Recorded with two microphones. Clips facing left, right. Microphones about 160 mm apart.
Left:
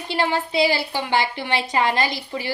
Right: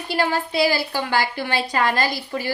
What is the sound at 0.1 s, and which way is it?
A woman's voice, 20° left (ahead or behind).